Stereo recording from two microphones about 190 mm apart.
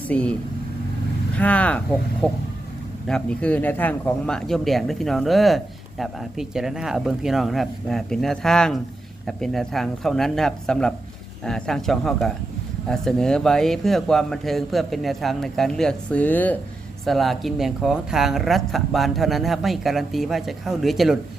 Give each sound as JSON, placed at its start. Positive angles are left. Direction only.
{"t": 0.1, "sound": "speech", "side_deg": 5}
{"t": 1.4, "sound": "speech", "side_deg": 5}